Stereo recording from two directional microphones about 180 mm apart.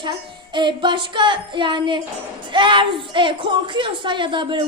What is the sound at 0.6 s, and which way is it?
A woman's voice, 25° right (ahead or behind).